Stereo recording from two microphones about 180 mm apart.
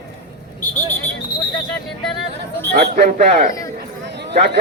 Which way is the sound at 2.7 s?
65° right (ahead or behind).